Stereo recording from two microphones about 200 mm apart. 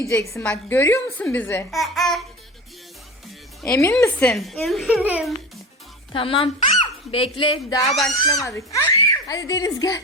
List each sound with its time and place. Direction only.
0.0 s a child's voice: 15° left (ahead or behind)
3.6 s a child's voice: 15° left (ahead or behind); by 5.3 s 5° right (ahead or behind)
6.1 s speech: 25° left (ahead or behind)
7.9 s a woman's voice: centre (ahead or behind)
8.2 s a child's voice: 15° left (ahead or behind)